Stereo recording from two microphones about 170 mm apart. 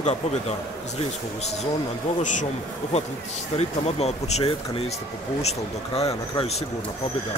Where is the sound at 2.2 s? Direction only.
45° left (ahead or behind).